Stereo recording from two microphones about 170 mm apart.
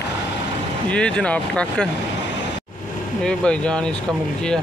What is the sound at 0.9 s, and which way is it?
Speech, 5° left (ahead or behind).